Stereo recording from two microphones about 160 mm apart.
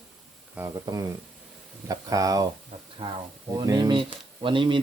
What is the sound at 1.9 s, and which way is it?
Speech, 20° right (ahead or behind).